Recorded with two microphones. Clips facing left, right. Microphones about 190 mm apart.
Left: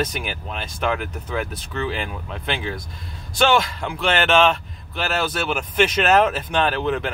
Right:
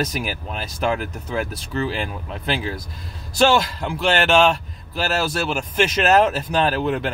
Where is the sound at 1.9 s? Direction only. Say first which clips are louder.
Right 1 dB; centre (ahead or behind).